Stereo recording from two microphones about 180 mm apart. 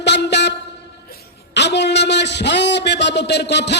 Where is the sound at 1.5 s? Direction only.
70° left (ahead or behind).